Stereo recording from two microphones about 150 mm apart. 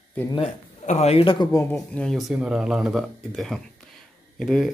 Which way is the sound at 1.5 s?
20° left (ahead or behind).